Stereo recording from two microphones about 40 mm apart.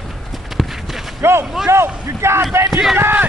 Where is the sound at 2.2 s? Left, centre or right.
Right.